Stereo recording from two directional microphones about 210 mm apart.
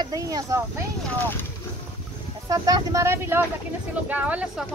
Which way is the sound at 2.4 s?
15° right (ahead or behind).